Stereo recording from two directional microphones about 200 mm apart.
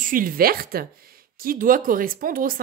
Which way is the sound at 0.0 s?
45° right (ahead or behind).